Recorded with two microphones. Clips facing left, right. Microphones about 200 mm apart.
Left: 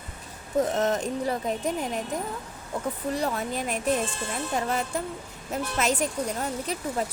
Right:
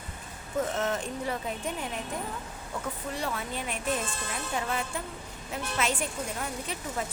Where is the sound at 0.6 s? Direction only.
40° left (ahead or behind).